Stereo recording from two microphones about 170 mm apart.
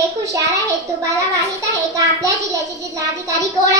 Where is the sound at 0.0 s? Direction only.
20° right (ahead or behind).